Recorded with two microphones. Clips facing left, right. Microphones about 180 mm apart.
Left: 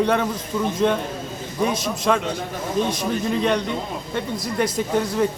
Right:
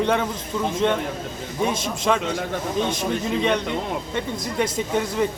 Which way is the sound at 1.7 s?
25° right (ahead or behind).